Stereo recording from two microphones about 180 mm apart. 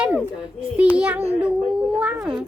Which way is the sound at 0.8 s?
5° right (ahead or behind).